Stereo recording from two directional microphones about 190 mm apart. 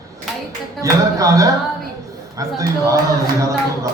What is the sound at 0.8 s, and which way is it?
Speech, 15° right (ahead or behind).